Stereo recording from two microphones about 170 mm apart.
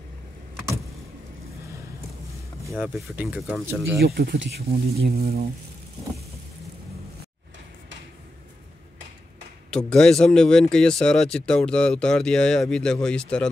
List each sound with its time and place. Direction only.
2.7 s speech: 5° right (ahead or behind)
4.0 s speech: 65° right (ahead or behind)
9.7 s speech: 5° left (ahead or behind)